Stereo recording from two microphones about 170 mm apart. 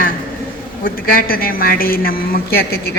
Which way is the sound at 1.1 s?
60° left (ahead or behind).